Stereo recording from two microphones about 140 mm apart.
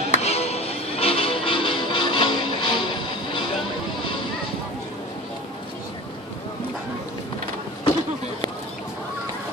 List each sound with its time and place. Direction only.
0.1 s music: 50° left (ahead or behind); by 2.9 s 35° left (ahead or behind)